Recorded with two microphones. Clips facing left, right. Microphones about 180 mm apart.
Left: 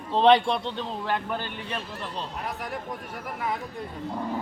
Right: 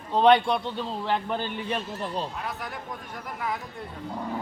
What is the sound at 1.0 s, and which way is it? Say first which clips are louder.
Speech: right 2 dB; 20° right (ahead or behind).